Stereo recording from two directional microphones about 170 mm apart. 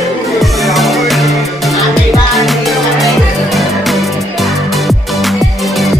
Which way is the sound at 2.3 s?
Centre (ahead or behind).